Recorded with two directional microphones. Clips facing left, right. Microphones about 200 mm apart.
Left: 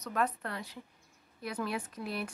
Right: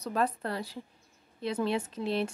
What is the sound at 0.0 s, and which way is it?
A woman's voice, 30° right (ahead or behind).